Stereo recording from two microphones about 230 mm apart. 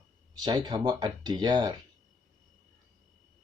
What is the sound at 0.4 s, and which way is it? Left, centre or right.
Speech, centre.